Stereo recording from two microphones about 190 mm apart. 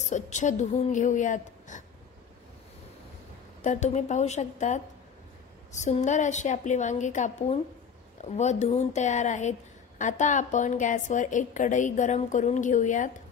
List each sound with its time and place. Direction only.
0.0 s a woman's voice: 40° left (ahead or behind)
3.6 s a woman's voice: 40° left (ahead or behind)